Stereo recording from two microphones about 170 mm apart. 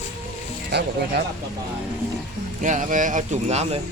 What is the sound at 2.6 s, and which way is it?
Speech, 45° right (ahead or behind).